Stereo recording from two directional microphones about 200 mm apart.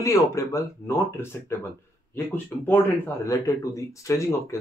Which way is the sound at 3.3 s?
15° left (ahead or behind).